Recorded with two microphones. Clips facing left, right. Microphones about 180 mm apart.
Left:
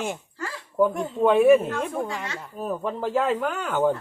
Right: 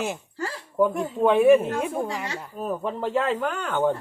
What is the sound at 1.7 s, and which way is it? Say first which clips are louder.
Speech: right 1 dB; 10° right (ahead or behind).